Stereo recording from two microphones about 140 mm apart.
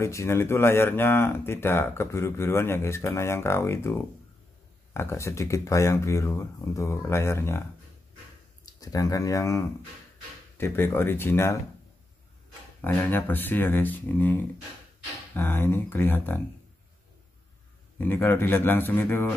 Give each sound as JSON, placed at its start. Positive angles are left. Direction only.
{"t": 0.0, "sound": "speech", "side_deg": 20}
{"t": 8.6, "sound": "speech", "side_deg": 25}
{"t": 12.8, "sound": "speech", "side_deg": 15}
{"t": 17.9, "sound": "speech", "side_deg": 15}